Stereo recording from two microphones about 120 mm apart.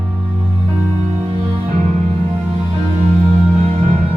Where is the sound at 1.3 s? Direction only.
60° right (ahead or behind).